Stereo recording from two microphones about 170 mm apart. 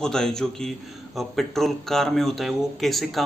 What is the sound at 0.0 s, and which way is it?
A man's voice, 5° left (ahead or behind).